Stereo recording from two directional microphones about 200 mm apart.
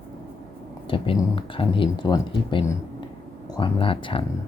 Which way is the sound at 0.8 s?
25° left (ahead or behind).